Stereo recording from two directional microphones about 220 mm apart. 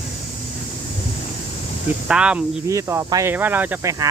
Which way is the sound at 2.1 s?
5° right (ahead or behind).